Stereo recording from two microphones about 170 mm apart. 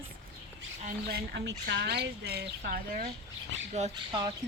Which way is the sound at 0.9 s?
65° right (ahead or behind).